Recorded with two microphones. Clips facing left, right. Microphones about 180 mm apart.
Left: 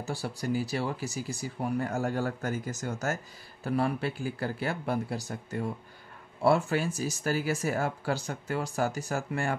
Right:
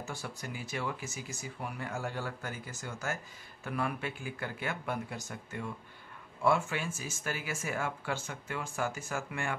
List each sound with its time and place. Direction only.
0.0 s speech: 35° left (ahead or behind)